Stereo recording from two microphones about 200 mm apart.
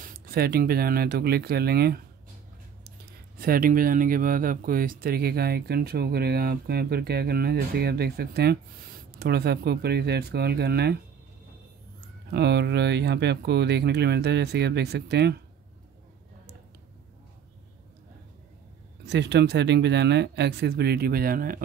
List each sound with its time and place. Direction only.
0.0 s speech: 45° right (ahead or behind)
3.3 s speech: 45° right (ahead or behind)
12.3 s speech: 55° right (ahead or behind)
19.0 s speech: 60° right (ahead or behind)